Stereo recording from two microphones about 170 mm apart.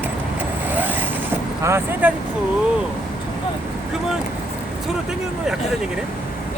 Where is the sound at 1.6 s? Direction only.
15° right (ahead or behind).